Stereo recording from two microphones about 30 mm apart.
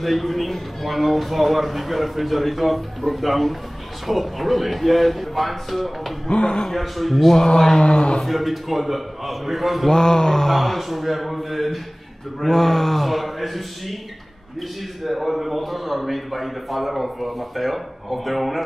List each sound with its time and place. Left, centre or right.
0.0 s a man's voice: centre
6.2 s speech: left
6.8 s a man's voice: centre
7.3 s a sound: centre
7.8 s a man's voice: left
8.2 s a man's voice: centre
9.8 s a sound: left
10.8 s a man's voice: centre
15.0 s a man's voice: centre